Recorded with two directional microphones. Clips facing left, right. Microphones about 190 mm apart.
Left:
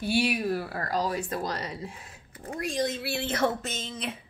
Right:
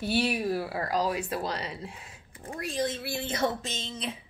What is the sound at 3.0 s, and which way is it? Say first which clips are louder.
Speech: left 2 dB; 80° left.